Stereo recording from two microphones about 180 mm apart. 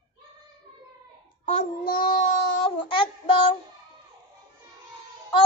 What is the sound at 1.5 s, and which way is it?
Child singing, 50° left (ahead or behind).